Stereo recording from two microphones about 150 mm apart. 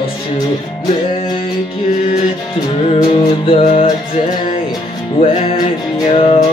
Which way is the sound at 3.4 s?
40° left (ahead or behind).